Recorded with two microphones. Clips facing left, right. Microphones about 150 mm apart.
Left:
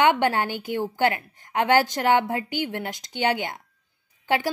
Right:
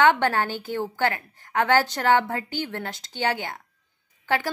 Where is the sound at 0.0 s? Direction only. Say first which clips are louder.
Even; 15° left (ahead or behind).